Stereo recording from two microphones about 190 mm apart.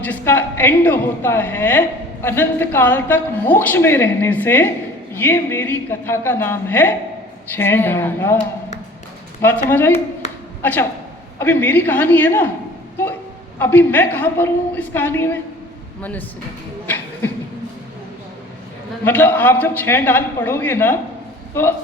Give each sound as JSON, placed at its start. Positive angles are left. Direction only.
{"t": 0.0, "sound": "a woman's voice", "side_deg": 10}
{"t": 9.4, "sound": "a woman's voice", "side_deg": 10}
{"t": 10.2, "sound": "a sound", "side_deg": 35}
{"t": 10.6, "sound": "a woman's voice", "side_deg": 10}
{"t": 13.6, "sound": "a woman's voice", "side_deg": 10}
{"t": 16.8, "sound": "beatboxing", "side_deg": 10}
{"t": 19.0, "sound": "a woman's voice", "side_deg": 10}